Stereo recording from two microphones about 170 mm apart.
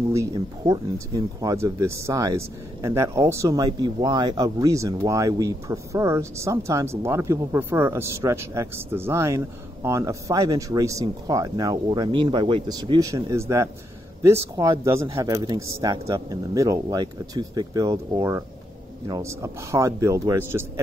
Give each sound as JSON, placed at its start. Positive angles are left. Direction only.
{"t": 0.1, "sound": "a man's voice", "side_deg": -15}